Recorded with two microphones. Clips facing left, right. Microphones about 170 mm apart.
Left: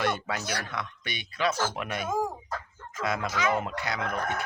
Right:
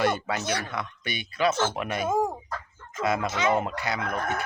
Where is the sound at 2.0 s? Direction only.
25° right (ahead or behind).